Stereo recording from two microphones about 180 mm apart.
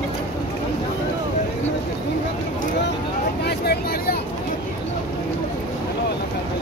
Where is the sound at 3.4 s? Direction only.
60° left (ahead or behind).